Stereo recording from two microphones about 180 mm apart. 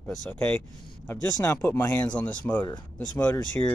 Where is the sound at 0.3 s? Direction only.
10° left (ahead or behind).